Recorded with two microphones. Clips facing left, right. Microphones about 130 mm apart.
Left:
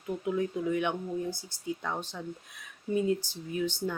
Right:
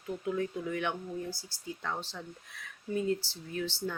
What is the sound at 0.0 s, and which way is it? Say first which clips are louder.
Speech: left 3 dB; 15° left (ahead or behind).